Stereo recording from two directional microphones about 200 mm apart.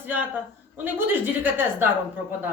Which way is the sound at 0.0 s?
10° right (ahead or behind).